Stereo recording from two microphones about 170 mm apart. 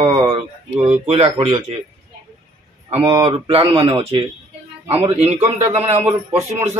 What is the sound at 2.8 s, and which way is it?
Speech, 30° right (ahead or behind).